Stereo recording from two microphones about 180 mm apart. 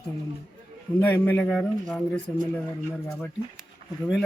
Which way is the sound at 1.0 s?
10° left (ahead or behind).